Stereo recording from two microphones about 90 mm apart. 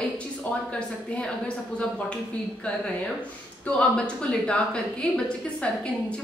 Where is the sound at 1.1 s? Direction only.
15° left (ahead or behind).